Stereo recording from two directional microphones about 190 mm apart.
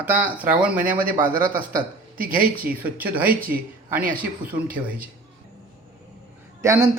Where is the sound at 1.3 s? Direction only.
50° right (ahead or behind).